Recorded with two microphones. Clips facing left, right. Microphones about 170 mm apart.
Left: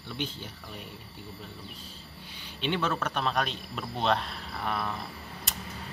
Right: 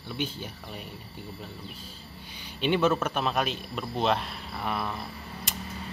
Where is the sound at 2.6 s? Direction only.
10° right (ahead or behind).